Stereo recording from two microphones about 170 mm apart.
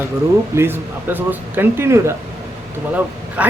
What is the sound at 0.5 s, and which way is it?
A man's voice, 15° right (ahead or behind).